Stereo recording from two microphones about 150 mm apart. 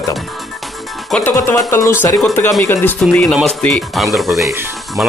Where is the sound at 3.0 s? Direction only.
Centre (ahead or behind).